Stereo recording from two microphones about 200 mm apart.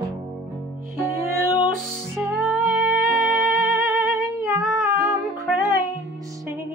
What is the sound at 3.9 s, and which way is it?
Music, 15° right (ahead or behind).